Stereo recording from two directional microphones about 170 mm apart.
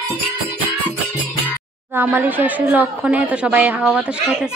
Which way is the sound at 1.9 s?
15° right (ahead or behind).